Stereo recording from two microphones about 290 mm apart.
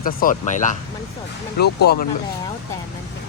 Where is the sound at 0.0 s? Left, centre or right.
Left.